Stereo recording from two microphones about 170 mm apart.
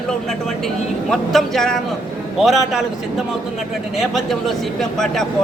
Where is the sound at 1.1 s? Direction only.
Centre (ahead or behind).